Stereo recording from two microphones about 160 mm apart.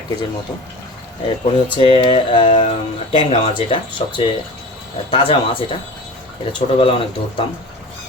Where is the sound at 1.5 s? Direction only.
30° left (ahead or behind).